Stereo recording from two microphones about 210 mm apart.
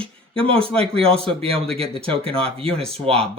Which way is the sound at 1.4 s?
25° right (ahead or behind).